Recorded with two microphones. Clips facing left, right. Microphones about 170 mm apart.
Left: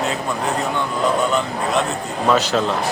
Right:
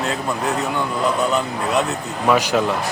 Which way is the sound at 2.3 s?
15° right (ahead or behind).